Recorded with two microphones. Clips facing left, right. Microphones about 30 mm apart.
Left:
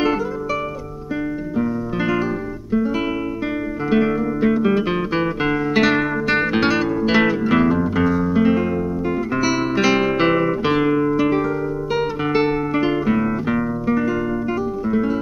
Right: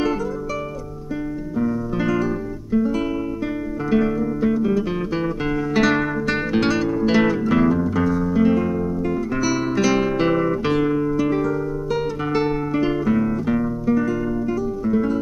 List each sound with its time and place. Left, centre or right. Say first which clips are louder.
1.6 s music: even; left
3.9 s guitar: left 1 dB; left
7.1 s music: left 1 dB; left
9.3 s guitar: left 3 dB; left
14.9 s music: even; left